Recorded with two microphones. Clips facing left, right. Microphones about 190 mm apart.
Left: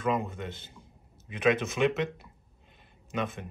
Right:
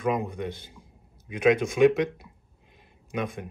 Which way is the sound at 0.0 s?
15° right (ahead or behind).